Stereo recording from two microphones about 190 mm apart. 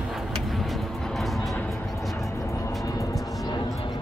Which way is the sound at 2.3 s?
15° left (ahead or behind).